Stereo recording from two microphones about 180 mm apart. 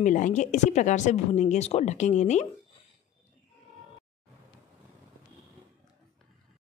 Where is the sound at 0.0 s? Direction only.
45° left (ahead or behind).